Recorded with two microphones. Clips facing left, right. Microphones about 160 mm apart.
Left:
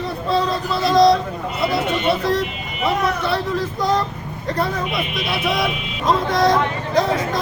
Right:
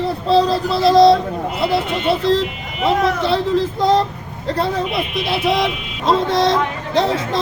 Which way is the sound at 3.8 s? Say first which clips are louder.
Right 4 dB; 25° right (ahead or behind).